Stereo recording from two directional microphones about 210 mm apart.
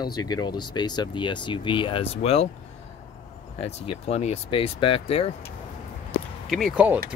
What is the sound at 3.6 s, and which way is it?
Speech, 30° left (ahead or behind).